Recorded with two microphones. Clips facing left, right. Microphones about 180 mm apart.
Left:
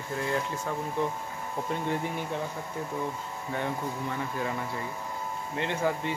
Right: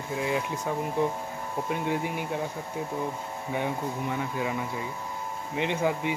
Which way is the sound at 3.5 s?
15° right (ahead or behind).